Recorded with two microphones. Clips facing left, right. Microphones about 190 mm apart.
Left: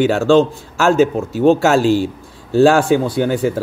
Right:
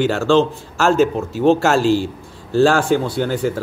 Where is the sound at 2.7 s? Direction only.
55° left (ahead or behind).